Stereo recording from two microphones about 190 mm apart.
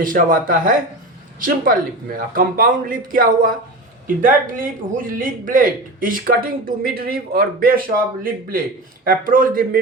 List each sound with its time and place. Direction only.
0.0 s speech: 45° right (ahead or behind)